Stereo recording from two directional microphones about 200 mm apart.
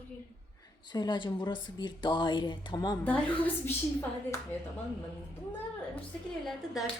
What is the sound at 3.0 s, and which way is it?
A woman's voice, 10° left (ahead or behind).